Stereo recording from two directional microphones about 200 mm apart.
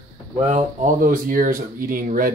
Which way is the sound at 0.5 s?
40° right (ahead or behind).